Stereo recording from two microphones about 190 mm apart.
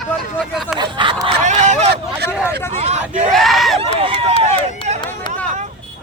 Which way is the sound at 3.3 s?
Centre (ahead or behind).